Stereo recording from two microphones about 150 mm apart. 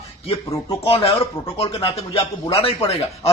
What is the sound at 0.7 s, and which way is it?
A man's voice, 40° left (ahead or behind).